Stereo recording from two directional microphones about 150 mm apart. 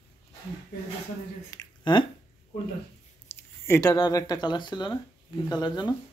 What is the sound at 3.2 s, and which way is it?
Speech, 15° left (ahead or behind).